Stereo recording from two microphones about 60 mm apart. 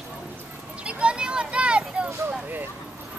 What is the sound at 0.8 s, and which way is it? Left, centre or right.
Vehicle, centre.